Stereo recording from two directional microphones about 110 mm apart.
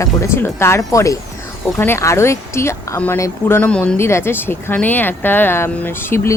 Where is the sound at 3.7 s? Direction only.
10° left (ahead or behind).